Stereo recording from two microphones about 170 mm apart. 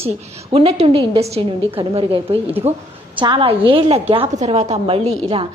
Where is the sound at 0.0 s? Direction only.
35° right (ahead or behind).